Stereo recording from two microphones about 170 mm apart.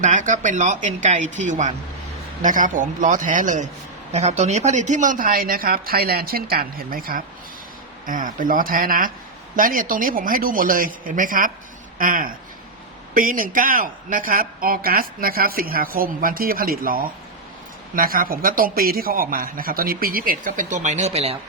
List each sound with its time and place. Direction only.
0.0 s a woman's voice: 50° right (ahead or behind)